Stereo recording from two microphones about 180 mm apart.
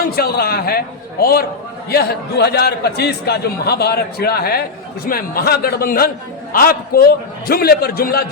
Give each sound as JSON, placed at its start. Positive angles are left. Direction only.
{"t": 0.2, "sound": "a man's voice", "side_deg": 60}